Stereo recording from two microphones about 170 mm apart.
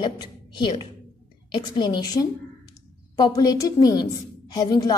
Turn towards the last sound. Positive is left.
turn(degrees=25)  # may be behind; listen again after turning